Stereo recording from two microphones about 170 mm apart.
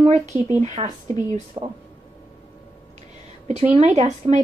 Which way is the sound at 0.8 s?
30° right (ahead or behind).